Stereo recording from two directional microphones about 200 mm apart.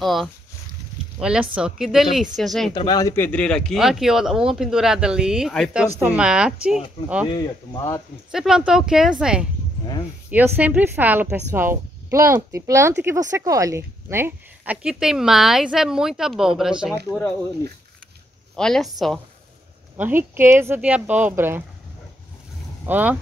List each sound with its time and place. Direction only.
0.0 s a woman's voice: centre (ahead or behind)
2.7 s a woman's voice: 20° left (ahead or behind); by 6.8 s 5° right (ahead or behind)
7.2 s speech: 20° left (ahead or behind)
8.3 s a woman's voice: 5° right (ahead or behind)
18.6 s a woman's voice: centre (ahead or behind)
20.0 s a woman's voice: 10° right (ahead or behind)
22.8 s a woman's voice: 10° right (ahead or behind)